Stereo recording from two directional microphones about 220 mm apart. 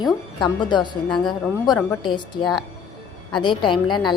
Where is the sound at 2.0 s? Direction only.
20° left (ahead or behind).